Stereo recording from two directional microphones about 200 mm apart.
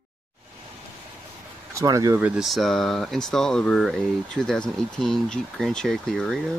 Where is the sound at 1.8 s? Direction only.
15° right (ahead or behind); by 6.4 s centre (ahead or behind).